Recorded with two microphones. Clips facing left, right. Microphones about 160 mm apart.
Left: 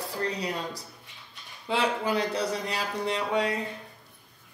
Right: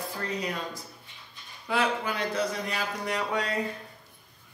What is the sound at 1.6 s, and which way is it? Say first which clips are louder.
A woman's voice: left 1 dB; 30° left (ahead or behind).